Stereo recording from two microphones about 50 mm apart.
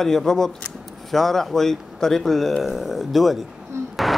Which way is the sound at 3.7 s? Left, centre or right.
Right.